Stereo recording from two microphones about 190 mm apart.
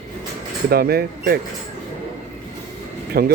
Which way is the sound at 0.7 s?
55° right (ahead or behind).